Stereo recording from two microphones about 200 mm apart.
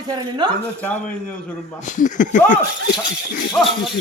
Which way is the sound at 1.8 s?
40° left (ahead or behind).